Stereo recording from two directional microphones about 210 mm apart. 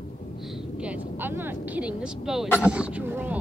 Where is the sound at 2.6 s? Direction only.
5° right (ahead or behind).